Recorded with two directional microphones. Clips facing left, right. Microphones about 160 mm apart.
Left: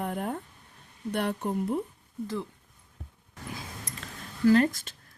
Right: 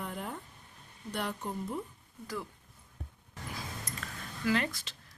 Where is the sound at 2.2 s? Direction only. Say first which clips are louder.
Left 6 dB; 25° left (ahead or behind).